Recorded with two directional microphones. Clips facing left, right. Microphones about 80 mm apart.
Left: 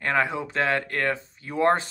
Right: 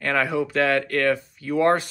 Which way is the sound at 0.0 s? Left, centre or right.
Left.